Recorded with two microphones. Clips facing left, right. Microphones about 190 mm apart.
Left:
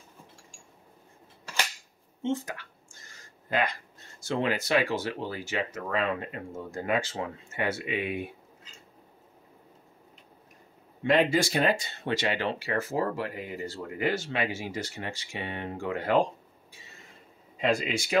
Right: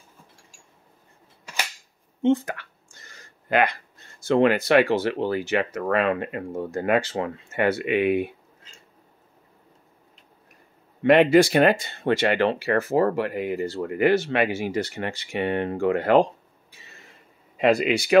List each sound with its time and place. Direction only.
2.2 s a sound: 65° right (ahead or behind)
4.2 s speech: 60° right (ahead or behind)
11.0 s speech: 65° right (ahead or behind)
17.6 s speech: 65° right (ahead or behind)